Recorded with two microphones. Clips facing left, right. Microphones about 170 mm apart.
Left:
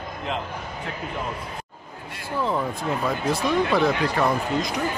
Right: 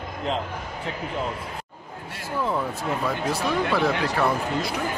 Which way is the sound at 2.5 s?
15° left (ahead or behind).